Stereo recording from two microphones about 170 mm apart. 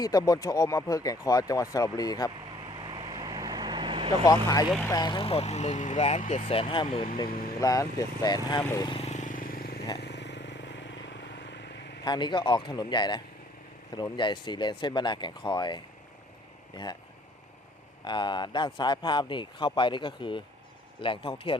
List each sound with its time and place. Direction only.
0.0 s speech: 20° left (ahead or behind)
2.6 s vehicle: 30° right (ahead or behind)
4.9 s speech: 25° left (ahead or behind)
7.3 s speech: 60° left (ahead or behind)
7.6 s speech: 20° left (ahead or behind)
9.0 s vehicle: 45° left (ahead or behind); by 9.8 s 60° left (ahead or behind)
10.0 s vehicle: 85° left
12.0 s speech: 25° left (ahead or behind)
18.0 s speech: 25° left (ahead or behind)